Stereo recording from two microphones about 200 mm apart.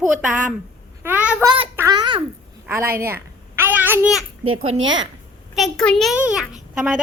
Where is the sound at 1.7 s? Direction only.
20° right (ahead or behind).